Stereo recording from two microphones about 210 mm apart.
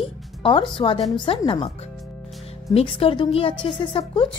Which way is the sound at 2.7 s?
25° left (ahead or behind).